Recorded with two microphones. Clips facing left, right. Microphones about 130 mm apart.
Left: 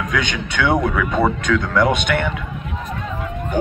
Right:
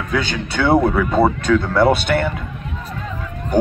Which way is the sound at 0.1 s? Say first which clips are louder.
Right 1 dB; 35° right (ahead or behind).